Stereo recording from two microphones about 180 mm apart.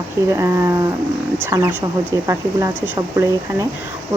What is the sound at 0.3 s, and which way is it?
Speech, 15° right (ahead or behind).